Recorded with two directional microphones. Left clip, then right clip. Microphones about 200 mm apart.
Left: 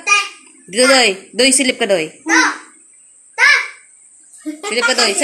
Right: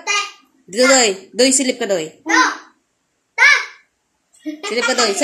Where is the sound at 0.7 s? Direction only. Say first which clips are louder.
Left 2 dB; centre (ahead or behind).